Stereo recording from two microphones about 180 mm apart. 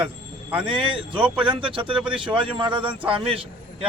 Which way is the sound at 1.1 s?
5° right (ahead or behind).